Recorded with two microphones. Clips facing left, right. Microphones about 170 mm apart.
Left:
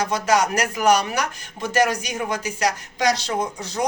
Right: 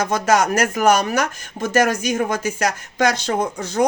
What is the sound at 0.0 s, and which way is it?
Speech, 50° right (ahead or behind).